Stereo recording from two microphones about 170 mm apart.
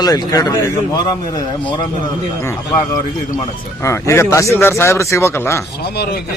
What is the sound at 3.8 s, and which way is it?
Speech, 15° left (ahead or behind).